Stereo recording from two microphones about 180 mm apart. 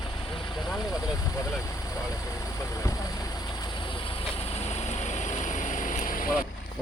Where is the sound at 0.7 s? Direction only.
20° left (ahead or behind).